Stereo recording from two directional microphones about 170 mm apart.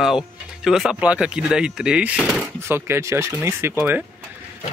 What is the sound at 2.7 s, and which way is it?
Speech, 15° right (ahead or behind).